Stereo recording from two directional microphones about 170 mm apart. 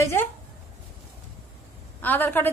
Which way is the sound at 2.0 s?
10° left (ahead or behind).